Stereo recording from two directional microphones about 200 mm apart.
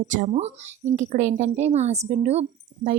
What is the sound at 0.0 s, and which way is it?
Speech, 35° right (ahead or behind).